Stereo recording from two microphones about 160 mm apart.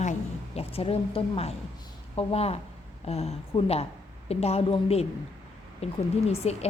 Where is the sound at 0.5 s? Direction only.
40° left (ahead or behind).